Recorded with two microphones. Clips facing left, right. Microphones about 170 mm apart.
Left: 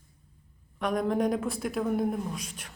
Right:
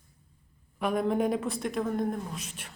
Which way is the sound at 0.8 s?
5° right (ahead or behind).